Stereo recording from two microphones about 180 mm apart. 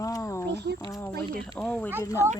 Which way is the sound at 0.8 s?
20° left (ahead or behind).